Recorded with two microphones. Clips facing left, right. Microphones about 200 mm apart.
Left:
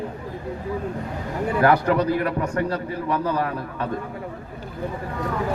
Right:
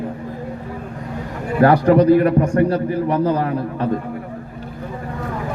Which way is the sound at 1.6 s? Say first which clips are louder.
Right 7 dB; 30° right (ahead or behind).